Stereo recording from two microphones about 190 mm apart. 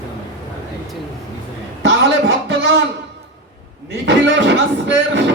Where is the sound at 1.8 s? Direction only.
70° right (ahead or behind).